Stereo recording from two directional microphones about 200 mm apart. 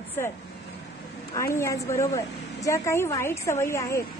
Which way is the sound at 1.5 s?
15° left (ahead or behind).